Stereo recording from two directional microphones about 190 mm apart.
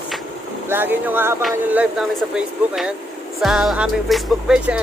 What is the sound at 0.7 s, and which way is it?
Speech, 10° right (ahead or behind).